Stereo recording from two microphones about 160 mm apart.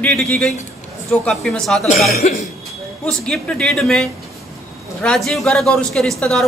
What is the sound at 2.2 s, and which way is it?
Cough, 55° left (ahead or behind).